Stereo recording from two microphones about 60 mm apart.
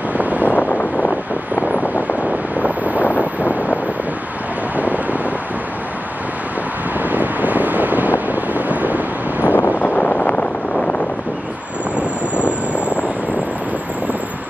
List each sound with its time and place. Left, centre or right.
0.2 s vehicle: right
0.6 s wind noise: left
2.6 s wind noise: right
4.7 s wind noise: right
7.0 s wind noise: right
9.4 s wind noise: left